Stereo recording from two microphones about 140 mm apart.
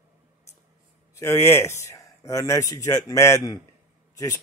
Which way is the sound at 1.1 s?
20° left (ahead or behind).